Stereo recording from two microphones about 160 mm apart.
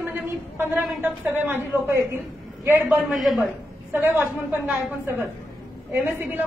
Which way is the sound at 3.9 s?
10° right (ahead or behind).